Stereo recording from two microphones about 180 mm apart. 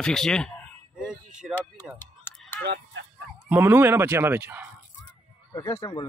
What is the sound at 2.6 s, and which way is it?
Speech, 65° right (ahead or behind).